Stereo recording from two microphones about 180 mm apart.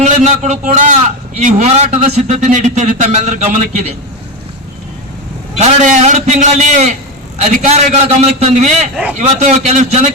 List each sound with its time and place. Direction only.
0.0 s a man's voice: 40° right (ahead or behind)
5.5 s a man's voice: 40° right (ahead or behind)